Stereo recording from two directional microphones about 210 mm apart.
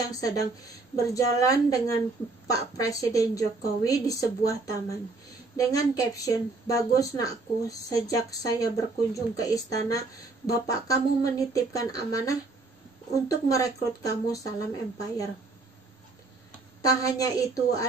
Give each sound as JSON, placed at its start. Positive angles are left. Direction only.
{"t": 0.1, "sound": "speech", "side_deg": 15}
{"t": 16.8, "sound": "speech", "side_deg": 15}